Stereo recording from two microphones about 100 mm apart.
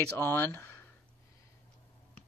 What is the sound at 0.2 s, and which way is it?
Speech, 20° left (ahead or behind).